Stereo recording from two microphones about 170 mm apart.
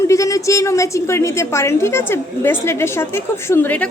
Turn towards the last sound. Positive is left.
turn(degrees=10)  # may be behind; listen again after turning